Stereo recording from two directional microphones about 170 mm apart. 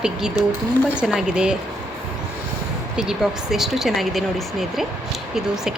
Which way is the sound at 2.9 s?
5° right (ahead or behind).